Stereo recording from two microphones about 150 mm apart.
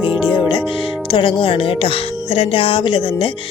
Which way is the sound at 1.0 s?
35° left (ahead or behind).